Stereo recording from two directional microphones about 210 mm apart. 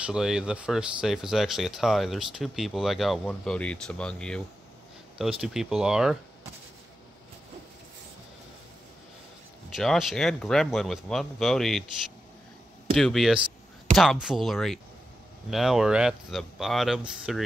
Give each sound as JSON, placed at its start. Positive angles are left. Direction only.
{"t": 0.0, "sound": "speech", "side_deg": -5}
{"t": 5.4, "sound": "speech", "side_deg": 0}
{"t": 9.8, "sound": "speech", "side_deg": 0}
{"t": 12.9, "sound": "speech", "side_deg": 0}